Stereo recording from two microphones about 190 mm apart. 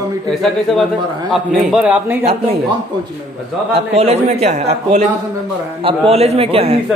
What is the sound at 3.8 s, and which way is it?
A man's voice, 35° right (ahead or behind).